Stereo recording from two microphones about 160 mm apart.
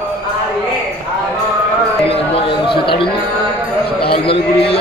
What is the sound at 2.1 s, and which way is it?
Speech, 35° left (ahead or behind).